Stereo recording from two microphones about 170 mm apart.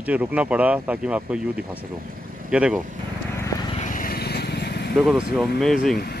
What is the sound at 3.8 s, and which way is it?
Vehicle, 50° left (ahead or behind).